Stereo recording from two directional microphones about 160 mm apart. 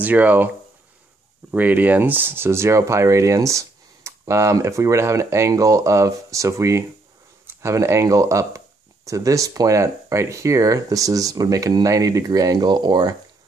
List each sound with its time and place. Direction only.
0.0 s speech: 10° right (ahead or behind)
1.5 s speech: 10° right (ahead or behind); by 13.1 s 25° right (ahead or behind)